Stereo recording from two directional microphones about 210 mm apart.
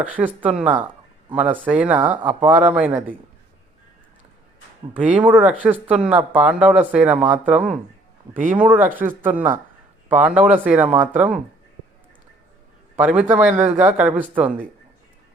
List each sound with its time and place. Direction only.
0.0 s speech: 5° right (ahead or behind)
5.0 s speech: 5° right (ahead or behind)
13.0 s speech: 5° right (ahead or behind)
13.5 s speech: 35° right (ahead or behind)
13.7 s speech: 5° right (ahead or behind)